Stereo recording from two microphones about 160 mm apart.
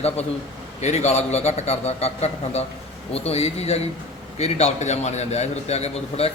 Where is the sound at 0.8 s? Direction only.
45° left (ahead or behind).